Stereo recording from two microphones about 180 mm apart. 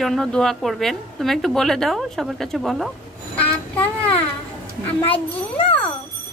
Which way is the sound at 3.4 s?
10° left (ahead or behind).